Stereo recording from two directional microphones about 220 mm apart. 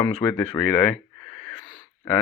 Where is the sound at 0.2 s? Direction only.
10° left (ahead or behind).